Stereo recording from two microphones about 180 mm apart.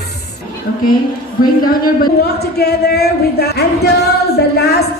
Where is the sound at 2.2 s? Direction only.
65° left (ahead or behind).